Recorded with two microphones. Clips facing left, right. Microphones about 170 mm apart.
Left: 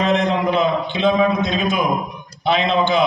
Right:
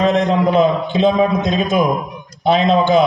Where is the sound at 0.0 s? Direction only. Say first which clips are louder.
Right 3 dB; 40° right (ahead or behind).